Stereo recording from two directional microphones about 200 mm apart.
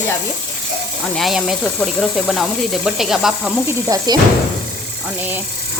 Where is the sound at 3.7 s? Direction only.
15° right (ahead or behind).